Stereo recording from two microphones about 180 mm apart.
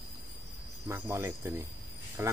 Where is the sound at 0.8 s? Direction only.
15° right (ahead or behind).